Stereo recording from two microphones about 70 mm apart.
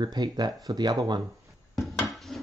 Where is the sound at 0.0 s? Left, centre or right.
Right.